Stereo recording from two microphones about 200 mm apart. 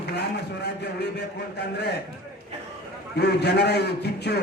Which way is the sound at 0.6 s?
55° left (ahead or behind).